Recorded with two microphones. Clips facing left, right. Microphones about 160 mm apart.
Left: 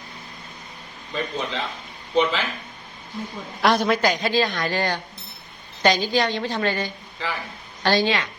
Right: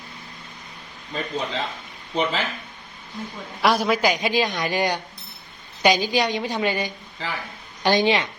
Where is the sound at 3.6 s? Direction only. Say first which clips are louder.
Even; 5° right (ahead or behind); by 8.3 s 20° right (ahead or behind).